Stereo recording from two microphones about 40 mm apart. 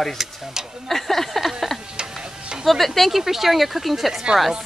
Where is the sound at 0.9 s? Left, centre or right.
Centre.